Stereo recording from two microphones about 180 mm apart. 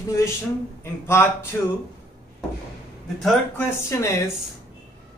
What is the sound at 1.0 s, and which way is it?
Speech, 15° left (ahead or behind).